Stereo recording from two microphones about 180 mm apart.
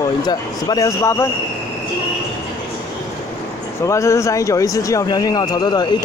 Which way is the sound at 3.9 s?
15° left (ahead or behind).